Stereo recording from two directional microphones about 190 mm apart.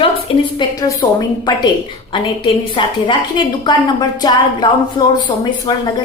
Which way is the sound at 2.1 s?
25° left (ahead or behind).